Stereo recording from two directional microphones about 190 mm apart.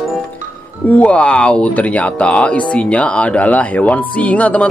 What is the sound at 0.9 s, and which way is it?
Speech, 5° left (ahead or behind).